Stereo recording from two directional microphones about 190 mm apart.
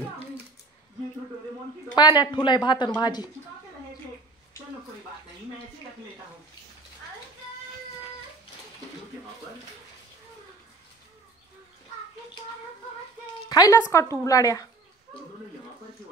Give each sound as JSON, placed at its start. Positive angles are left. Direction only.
{"t": 2.0, "sound": "speech", "side_deg": 25}
{"t": 13.5, "sound": "speech", "side_deg": 20}